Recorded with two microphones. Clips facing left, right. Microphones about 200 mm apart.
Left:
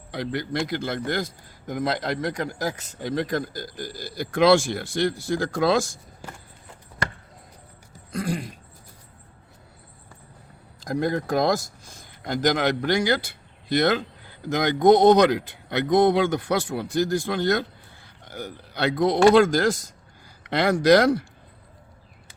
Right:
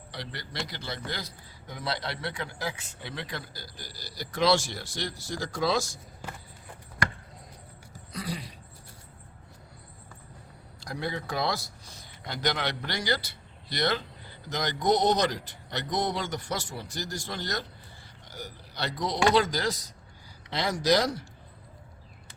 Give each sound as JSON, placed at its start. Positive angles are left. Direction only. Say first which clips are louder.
{"t": 0.1, "sound": "a man's voice", "louder": "left 13 dB", "side_deg": 50}
{"t": 8.1, "sound": "a man's voice", "louder": "left 8 dB", "side_deg": 45}
{"t": 10.8, "sound": "a man's voice", "louder": "left 9 dB", "side_deg": 45}